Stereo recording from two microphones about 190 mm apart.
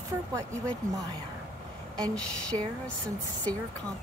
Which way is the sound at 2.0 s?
5° left (ahead or behind).